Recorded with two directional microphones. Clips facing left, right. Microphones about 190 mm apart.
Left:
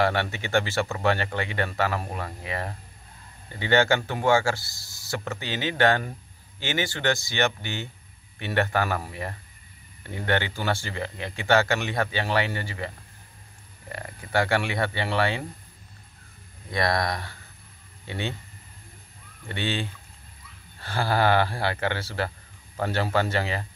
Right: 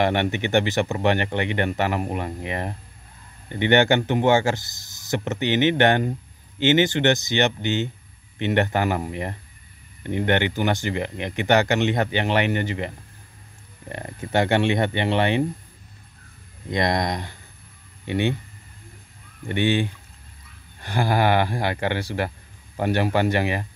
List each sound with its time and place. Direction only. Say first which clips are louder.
0.0 s speech: right 4 dB; 20° right (ahead or behind)
16.7 s speech: right 3 dB; 20° right (ahead or behind)
19.4 s speech: right 8 dB; 15° right (ahead or behind)